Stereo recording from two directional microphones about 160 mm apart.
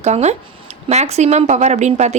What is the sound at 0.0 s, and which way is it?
A woman's voice, 45° right (ahead or behind).